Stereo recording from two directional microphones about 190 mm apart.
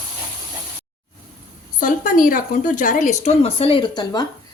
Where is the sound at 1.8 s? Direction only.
45° left (ahead or behind); by 4.3 s 20° left (ahead or behind).